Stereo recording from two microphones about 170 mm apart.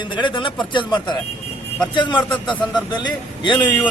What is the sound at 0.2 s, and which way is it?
Speech, 30° left (ahead or behind).